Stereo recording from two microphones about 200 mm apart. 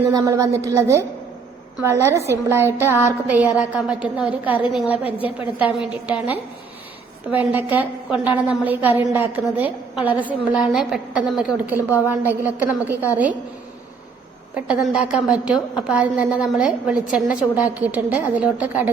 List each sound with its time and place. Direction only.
0.1 s a woman's voice: 15° right (ahead or behind)
14.7 s a woman's voice: 5° right (ahead or behind)